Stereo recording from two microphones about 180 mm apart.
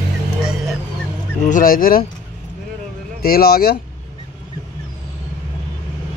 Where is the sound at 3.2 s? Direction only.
55° left (ahead or behind).